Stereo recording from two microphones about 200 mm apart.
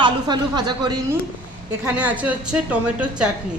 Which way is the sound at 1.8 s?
10° right (ahead or behind).